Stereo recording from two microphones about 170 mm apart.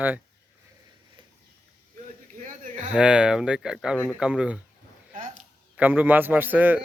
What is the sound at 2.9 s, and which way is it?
Speech, 5° right (ahead or behind).